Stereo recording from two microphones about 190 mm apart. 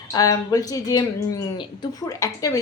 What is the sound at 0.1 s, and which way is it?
Speech, 20° left (ahead or behind).